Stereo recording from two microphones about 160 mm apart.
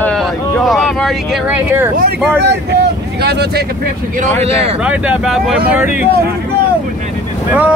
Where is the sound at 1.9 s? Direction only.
75° right (ahead or behind).